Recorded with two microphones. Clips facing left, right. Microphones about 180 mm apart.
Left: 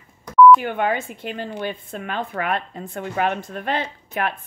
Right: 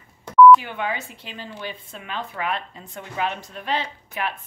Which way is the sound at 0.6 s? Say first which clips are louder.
Left 6 dB; 50° left (ahead or behind).